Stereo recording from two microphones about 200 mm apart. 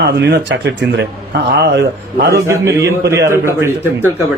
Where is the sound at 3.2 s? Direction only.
15° right (ahead or behind).